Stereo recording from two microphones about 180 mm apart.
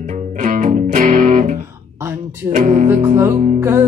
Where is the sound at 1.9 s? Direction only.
15° right (ahead or behind).